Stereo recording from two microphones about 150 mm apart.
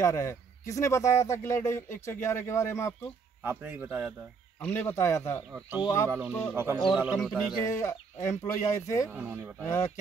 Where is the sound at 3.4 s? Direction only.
15° right (ahead or behind).